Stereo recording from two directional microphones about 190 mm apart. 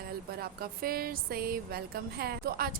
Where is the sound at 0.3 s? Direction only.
55° right (ahead or behind).